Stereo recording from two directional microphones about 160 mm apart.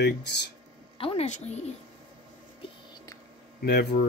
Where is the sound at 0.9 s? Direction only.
40° left (ahead or behind).